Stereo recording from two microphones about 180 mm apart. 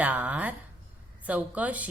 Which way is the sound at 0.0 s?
10° right (ahead or behind).